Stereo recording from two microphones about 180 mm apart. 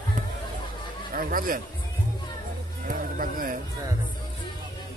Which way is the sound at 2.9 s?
50° right (ahead or behind).